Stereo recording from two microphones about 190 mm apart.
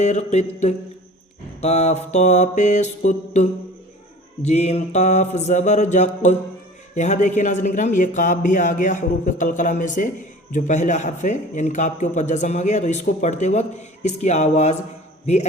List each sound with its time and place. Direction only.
0.0 s a man's voice: 35° left (ahead or behind)
4.4 s a man's voice: 35° left (ahead or behind)